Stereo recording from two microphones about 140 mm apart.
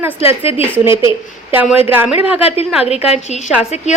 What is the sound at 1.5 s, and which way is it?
Speech, 10° right (ahead or behind).